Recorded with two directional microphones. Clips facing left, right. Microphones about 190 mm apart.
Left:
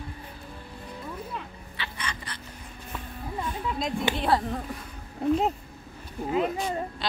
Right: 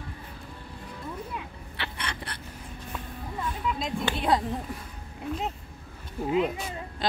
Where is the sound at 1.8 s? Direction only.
60° right (ahead or behind).